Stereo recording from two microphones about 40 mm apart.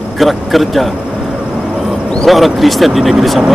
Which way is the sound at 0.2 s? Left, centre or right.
Centre.